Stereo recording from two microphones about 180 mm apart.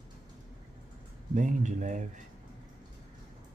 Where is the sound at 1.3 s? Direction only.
45° right (ahead or behind).